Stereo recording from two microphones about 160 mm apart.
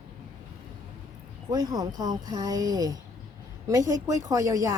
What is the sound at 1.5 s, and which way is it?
A woman's voice, 25° right (ahead or behind).